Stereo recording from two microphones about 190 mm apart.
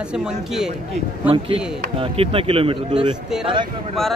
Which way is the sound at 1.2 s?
30° right (ahead or behind).